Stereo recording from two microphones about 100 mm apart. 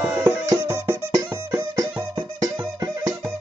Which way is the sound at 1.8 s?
40° right (ahead or behind).